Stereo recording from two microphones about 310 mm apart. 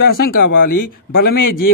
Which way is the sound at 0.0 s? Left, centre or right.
Left.